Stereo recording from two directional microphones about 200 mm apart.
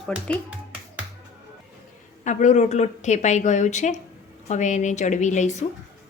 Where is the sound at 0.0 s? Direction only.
Centre (ahead or behind).